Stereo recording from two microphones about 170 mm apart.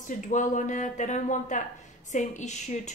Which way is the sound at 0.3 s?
45° left (ahead or behind).